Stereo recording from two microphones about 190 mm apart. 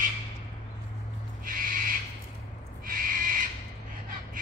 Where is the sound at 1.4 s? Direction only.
50° right (ahead or behind).